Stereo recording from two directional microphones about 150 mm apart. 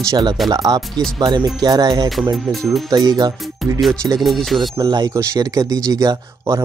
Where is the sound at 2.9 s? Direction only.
25° right (ahead or behind).